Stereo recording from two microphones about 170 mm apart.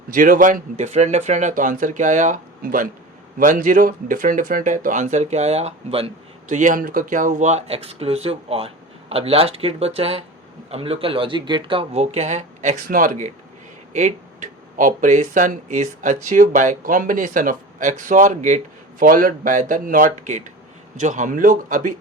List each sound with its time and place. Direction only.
0.1 s speech: 55° right (ahead or behind); by 6.1 s 35° right (ahead or behind)
6.5 s speech: 50° right (ahead or behind)